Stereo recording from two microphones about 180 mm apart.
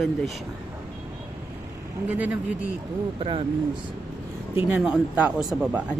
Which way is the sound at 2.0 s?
10° right (ahead or behind).